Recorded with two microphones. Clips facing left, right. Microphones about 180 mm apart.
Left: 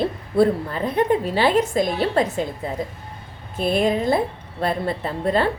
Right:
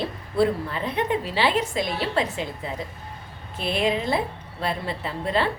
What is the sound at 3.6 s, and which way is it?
A woman's voice, 45° left (ahead or behind).